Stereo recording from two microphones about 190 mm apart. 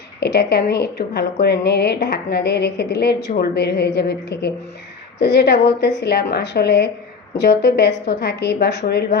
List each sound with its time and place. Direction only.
0.2 s a woman's voice: 60° left (ahead or behind)